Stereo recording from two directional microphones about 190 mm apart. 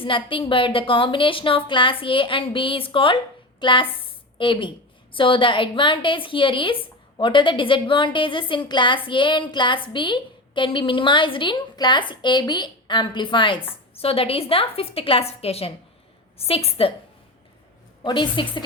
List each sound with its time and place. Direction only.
0.0 s a woman's voice: 25° left (ahead or behind)
18.0 s a woman's voice: 25° left (ahead or behind)